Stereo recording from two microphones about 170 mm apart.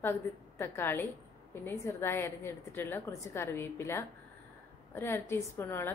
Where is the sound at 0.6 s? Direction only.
15° left (ahead or behind).